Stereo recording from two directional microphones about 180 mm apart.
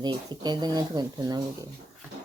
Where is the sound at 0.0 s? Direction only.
25° right (ahead or behind).